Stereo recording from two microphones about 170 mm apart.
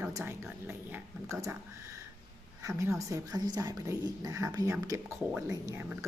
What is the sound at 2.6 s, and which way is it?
A woman's voice, 15° right (ahead or behind).